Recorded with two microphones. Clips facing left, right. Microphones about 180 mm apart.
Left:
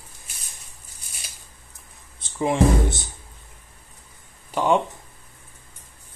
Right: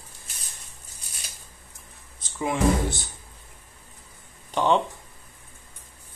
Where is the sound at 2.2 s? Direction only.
25° left (ahead or behind).